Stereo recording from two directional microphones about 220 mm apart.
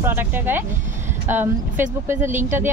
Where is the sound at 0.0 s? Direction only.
10° right (ahead or behind).